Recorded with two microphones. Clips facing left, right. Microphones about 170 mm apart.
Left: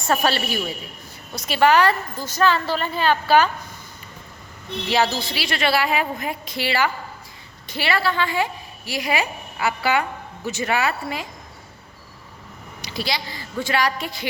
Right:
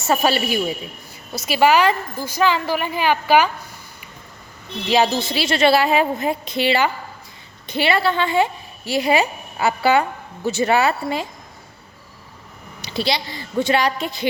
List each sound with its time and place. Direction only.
0.0 s speech: 10° right (ahead or behind)
4.9 s a woman's voice: 15° right (ahead or behind)
12.8 s a woman's voice: 25° right (ahead or behind)